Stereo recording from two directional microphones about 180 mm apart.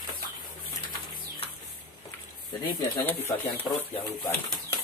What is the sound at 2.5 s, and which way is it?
Speech, 25° left (ahead or behind).